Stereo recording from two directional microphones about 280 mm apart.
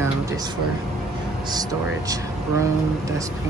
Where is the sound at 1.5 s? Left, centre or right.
Centre.